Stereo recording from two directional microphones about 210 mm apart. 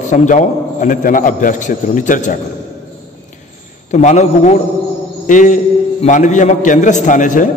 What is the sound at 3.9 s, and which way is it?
A man's voice, 35° left (ahead or behind).